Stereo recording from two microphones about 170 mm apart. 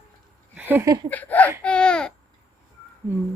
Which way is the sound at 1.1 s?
10° left (ahead or behind).